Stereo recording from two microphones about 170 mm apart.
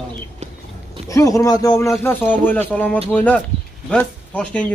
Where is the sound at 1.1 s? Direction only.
20° left (ahead or behind).